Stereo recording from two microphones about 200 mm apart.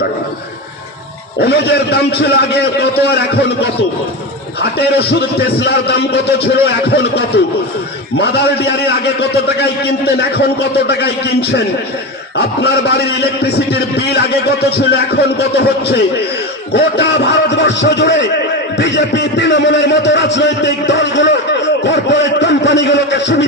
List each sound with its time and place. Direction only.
1.4 s a man's voice: 55° left (ahead or behind)
4.6 s a man's voice: 55° left (ahead or behind)
8.2 s a man's voice: 55° left (ahead or behind)